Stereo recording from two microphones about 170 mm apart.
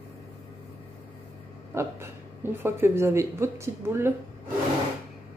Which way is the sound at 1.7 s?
15° right (ahead or behind).